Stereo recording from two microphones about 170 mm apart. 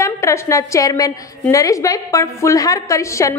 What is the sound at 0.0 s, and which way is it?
A woman's voice, 15° left (ahead or behind).